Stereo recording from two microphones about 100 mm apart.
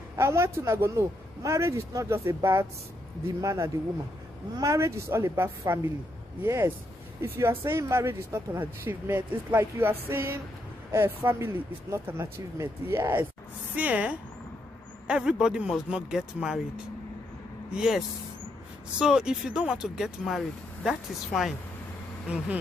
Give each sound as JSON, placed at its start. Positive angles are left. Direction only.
{"t": 0.1, "sound": "speech", "side_deg": -25}